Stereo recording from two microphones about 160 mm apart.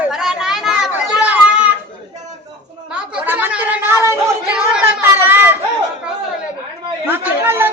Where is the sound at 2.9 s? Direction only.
5° right (ahead or behind).